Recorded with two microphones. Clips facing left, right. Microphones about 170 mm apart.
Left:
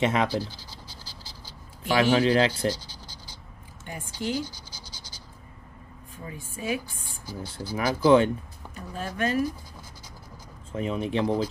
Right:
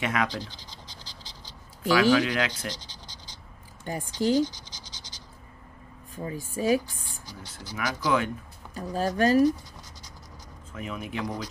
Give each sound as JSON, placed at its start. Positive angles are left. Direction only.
{"t": 0.0, "sound": "speech", "side_deg": 25}
{"t": 2.0, "sound": "speech", "side_deg": 25}
{"t": 2.7, "sound": "scratch", "side_deg": 10}
{"t": 3.9, "sound": "speech", "side_deg": -35}
{"t": 4.4, "sound": "scratch", "side_deg": 10}
{"t": 6.1, "sound": "speech", "side_deg": -35}
{"t": 7.7, "sound": "speech", "side_deg": 30}
{"t": 8.7, "sound": "speech", "side_deg": -35}
{"t": 10.7, "sound": "speech", "side_deg": 30}